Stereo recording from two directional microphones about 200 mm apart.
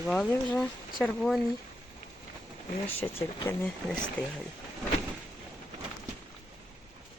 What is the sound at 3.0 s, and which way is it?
Speech, 5° left (ahead or behind).